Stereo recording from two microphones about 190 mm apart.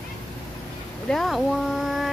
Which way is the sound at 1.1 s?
Centre (ahead or behind).